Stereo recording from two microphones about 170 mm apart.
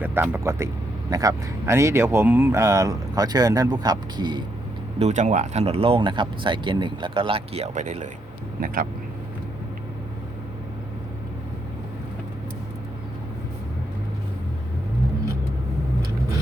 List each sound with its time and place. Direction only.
0.0 s speech: 10° right (ahead or behind)
4.9 s speech: 40° right (ahead or behind)
8.6 s speech: 55° right (ahead or behind)